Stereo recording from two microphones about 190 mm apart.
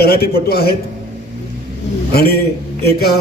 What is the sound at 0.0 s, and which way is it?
Speech, 55° left (ahead or behind).